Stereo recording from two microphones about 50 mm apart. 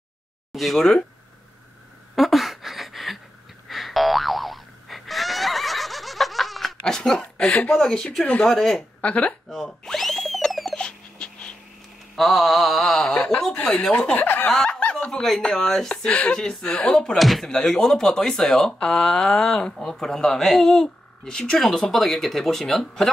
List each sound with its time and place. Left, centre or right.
0.5 s speech: centre
2.1 s a sound: centre
3.6 s boing: centre
6.8 s speech: centre
9.0 s speech: left
9.7 s a sound: centre
10.8 s dog: centre
12.2 s speech: centre
14.1 s speech: left
14.5 s chuckle: centre
15.4 s speech: centre
17.2 s speech: centre
17.5 s speech: centre